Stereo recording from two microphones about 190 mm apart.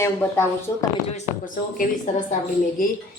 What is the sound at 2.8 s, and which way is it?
Speech, 45° left (ahead or behind).